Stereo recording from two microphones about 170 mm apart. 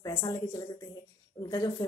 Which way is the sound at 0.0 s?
35° left (ahead or behind).